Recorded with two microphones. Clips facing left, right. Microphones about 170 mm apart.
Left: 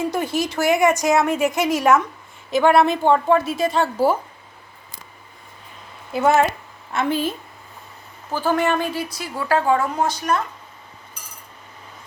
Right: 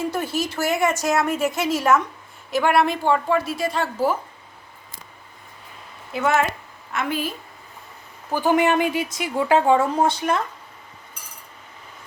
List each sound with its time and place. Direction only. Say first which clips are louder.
0.1 s speech: left 2 dB; 15° left (ahead or behind)
6.1 s speech: left 4 dB; 35° left (ahead or behind)
8.3 s a woman's voice: right 1 dB; 15° right (ahead or behind)